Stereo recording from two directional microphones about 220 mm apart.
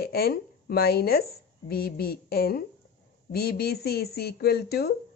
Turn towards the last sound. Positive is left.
turn(degrees=45)  # may be behind; listen again after turning